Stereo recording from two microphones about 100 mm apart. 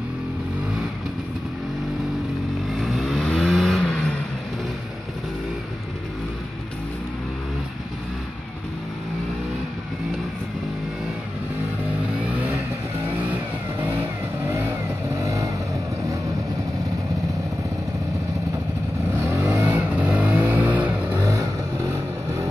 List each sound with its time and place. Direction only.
2.7 s vehicle: 5° right (ahead or behind)
12.3 s vehicle: 15° right (ahead or behind)
15.1 s vehicle: 30° right (ahead or behind)
19.1 s vehicle: 25° right (ahead or behind)
21.2 s vehicle: 35° right (ahead or behind)